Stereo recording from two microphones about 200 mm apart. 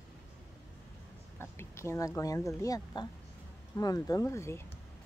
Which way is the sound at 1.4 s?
15° left (ahead or behind).